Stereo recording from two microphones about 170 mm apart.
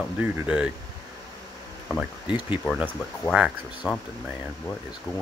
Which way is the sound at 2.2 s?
25° left (ahead or behind).